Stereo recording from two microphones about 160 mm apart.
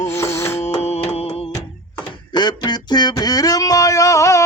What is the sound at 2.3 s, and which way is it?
Speech, 25° left (ahead or behind).